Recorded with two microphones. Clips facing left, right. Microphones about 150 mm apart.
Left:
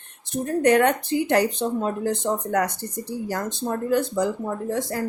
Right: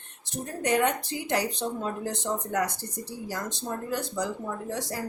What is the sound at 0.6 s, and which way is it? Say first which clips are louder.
Speech: left 6 dB; 60° left (ahead or behind).